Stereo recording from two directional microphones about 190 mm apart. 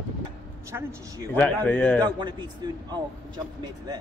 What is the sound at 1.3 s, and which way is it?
Speech, 10° left (ahead or behind).